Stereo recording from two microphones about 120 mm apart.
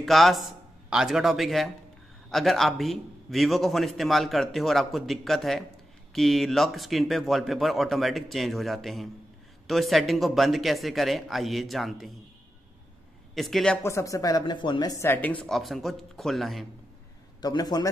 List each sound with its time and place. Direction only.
0.0 s a man's voice: centre (ahead or behind)
13.3 s a man's voice: centre (ahead or behind)
13.8 s speech: 25° left (ahead or behind)
14.4 s speech: 40° left (ahead or behind)
15.0 s a man's voice: 15° left (ahead or behind); by 16.6 s centre (ahead or behind)
17.4 s speech: 35° left (ahead or behind)